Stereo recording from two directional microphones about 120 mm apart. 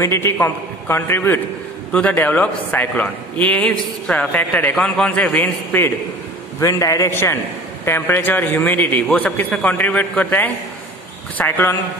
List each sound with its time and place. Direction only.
0.0 s a man's voice: 20° left (ahead or behind)
6.6 s a man's voice: 30° left (ahead or behind)